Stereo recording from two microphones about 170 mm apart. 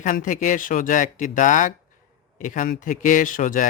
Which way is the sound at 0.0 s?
50° left (ahead or behind).